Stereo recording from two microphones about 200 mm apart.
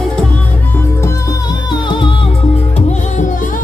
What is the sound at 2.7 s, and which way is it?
Music, 35° left (ahead or behind).